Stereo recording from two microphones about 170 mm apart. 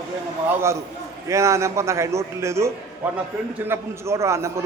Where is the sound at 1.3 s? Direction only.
15° right (ahead or behind).